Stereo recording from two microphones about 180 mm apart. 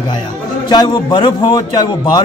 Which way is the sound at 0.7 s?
25° left (ahead or behind).